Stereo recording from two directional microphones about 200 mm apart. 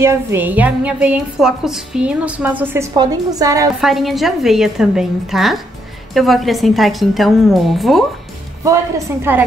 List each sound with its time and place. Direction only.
0.0 s a woman's voice: 10° right (ahead or behind)
3.8 s a woman's voice: centre (ahead or behind)
8.6 s a woman's voice: 15° right (ahead or behind)